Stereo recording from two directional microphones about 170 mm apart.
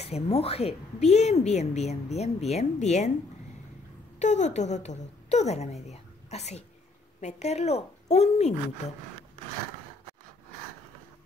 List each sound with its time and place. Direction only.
0.0 s speech: 35° left (ahead or behind)
4.2 s a woman's voice: 45° left (ahead or behind)